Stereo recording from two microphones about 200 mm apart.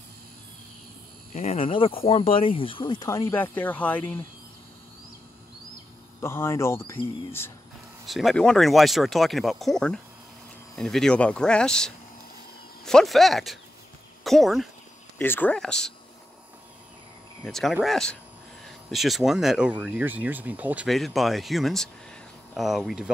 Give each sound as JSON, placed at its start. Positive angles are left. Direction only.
{"t": 1.3, "sound": "speech", "side_deg": 30}
{"t": 6.2, "sound": "speech", "side_deg": 10}
{"t": 8.1, "sound": "speech", "side_deg": 0}
{"t": 15.1, "sound": "speech", "side_deg": 10}
{"t": 17.5, "sound": "speech", "side_deg": 0}